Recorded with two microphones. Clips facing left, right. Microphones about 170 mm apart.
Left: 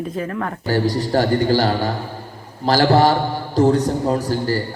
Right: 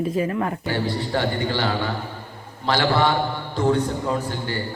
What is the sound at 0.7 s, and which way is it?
A man's voice, 40° left (ahead or behind).